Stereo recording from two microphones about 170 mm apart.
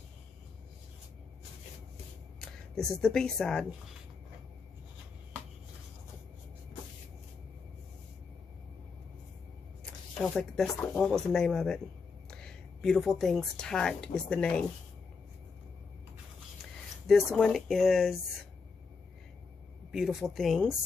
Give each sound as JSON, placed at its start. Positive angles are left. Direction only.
{"t": 2.9, "sound": "speech", "side_deg": 5}
{"t": 9.8, "sound": "a woman's voice", "side_deg": 5}
{"t": 17.1, "sound": "speech", "side_deg": 0}
{"t": 19.9, "sound": "speech", "side_deg": 0}